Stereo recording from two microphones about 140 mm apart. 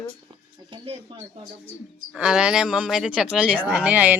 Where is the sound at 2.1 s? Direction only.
5° right (ahead or behind).